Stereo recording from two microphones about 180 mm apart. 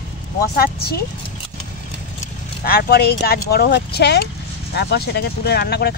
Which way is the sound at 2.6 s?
60° left (ahead or behind).